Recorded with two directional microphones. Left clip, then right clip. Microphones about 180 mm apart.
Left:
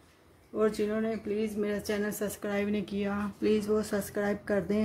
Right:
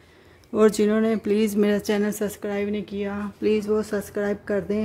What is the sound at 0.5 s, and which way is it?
Speech, 50° right (ahead or behind).